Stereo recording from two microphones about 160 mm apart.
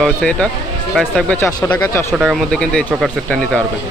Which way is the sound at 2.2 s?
Centre (ahead or behind).